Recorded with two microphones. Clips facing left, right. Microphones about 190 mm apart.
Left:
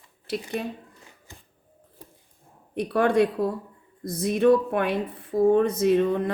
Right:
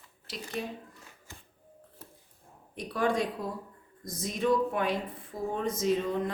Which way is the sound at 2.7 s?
65° left (ahead or behind).